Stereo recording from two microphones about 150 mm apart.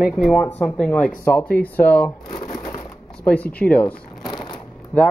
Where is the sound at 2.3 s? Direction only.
30° left (ahead or behind).